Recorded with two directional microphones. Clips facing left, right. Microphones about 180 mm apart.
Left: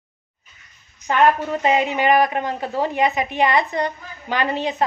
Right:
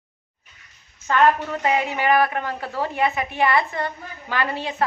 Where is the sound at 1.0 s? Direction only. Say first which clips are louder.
Left 1 dB; 15° left (ahead or behind).